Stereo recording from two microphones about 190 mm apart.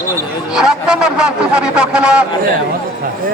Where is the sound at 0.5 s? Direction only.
5° right (ahead or behind).